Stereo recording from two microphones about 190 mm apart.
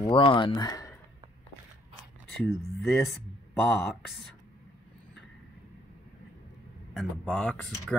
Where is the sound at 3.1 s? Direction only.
Centre (ahead or behind).